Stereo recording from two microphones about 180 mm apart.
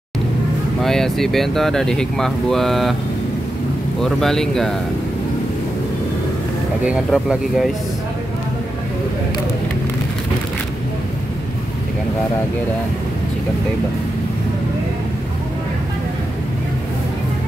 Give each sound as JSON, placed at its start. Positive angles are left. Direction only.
{"t": 0.8, "sound": "speech", "side_deg": 0}
{"t": 4.2, "sound": "speech", "side_deg": 0}
{"t": 6.8, "sound": "speech", "side_deg": -5}